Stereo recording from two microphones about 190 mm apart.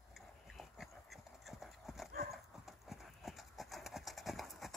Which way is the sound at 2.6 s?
Centre (ahead or behind).